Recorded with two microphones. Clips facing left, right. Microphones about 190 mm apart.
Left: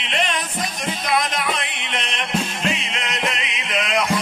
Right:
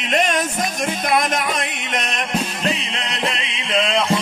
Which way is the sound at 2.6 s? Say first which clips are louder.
Right 2 dB; 35° right (ahead or behind).